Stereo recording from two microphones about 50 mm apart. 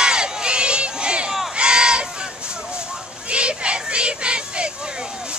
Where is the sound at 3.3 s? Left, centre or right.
Right.